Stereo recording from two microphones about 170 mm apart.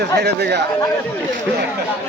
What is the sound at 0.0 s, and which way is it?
Speech, 80° right.